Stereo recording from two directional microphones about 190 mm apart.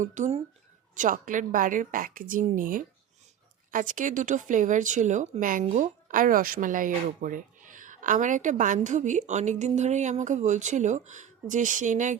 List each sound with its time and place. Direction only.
0.0 s a woman's voice: 40° right (ahead or behind)